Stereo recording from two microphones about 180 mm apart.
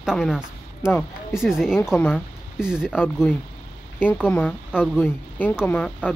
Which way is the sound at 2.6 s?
5° right (ahead or behind).